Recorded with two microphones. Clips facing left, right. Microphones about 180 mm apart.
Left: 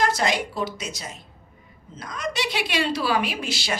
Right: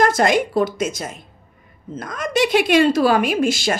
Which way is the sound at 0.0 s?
50° right (ahead or behind).